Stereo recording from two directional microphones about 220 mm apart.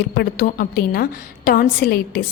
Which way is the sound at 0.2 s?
45° left (ahead or behind).